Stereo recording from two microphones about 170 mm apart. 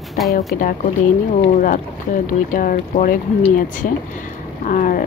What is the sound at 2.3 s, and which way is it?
Speech, 50° left (ahead or behind).